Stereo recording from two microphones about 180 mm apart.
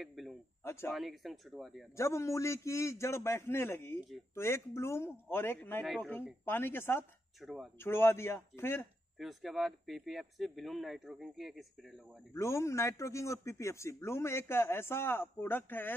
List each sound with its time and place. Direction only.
0.0 s speech: centre (ahead or behind)
0.7 s a man's voice: 15° left (ahead or behind)
0.9 s speech: centre (ahead or behind)
2.0 s a man's voice: 15° left (ahead or behind)
7.4 s speech: centre (ahead or behind)
7.8 s a man's voice: 15° left (ahead or behind)
9.2 s speech: centre (ahead or behind)
12.4 s a man's voice: 15° left (ahead or behind)